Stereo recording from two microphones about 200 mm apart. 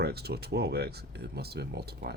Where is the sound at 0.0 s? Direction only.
55° right (ahead or behind).